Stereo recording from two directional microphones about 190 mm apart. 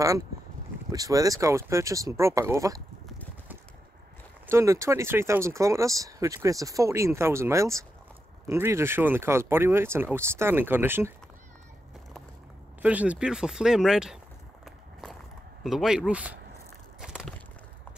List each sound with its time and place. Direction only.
0.9 s speech: 20° right (ahead or behind)
4.5 s speech: 15° right (ahead or behind)
12.8 s speech: 5° right (ahead or behind)
14.6 s a sound: centre (ahead or behind)
15.6 s speech: centre (ahead or behind)
17.0 s a sound: 5° right (ahead or behind)